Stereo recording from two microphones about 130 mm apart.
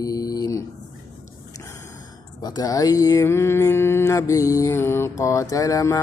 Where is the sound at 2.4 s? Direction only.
30° left (ahead or behind).